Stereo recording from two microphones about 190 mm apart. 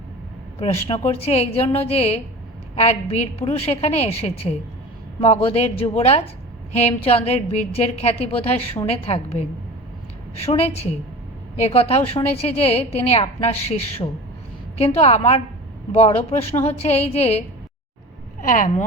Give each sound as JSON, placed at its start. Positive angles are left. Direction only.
{"t": 0.6, "sound": "a woman's voice", "side_deg": 30}
{"t": 18.4, "sound": "speech", "side_deg": 45}